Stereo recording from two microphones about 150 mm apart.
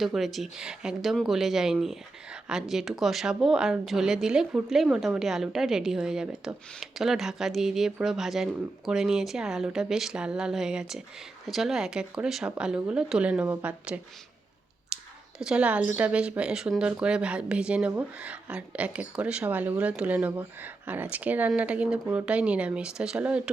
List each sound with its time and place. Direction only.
0.0 s speech: centre (ahead or behind)
14.9 s a sound: 5° right (ahead or behind)
15.4 s speech: 5° right (ahead or behind)